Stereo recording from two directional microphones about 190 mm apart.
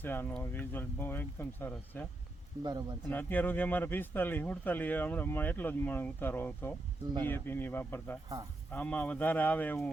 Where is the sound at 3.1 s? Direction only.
10° left (ahead or behind).